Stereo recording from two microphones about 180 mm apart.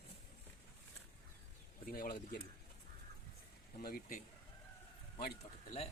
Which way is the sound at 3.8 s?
55° left (ahead or behind).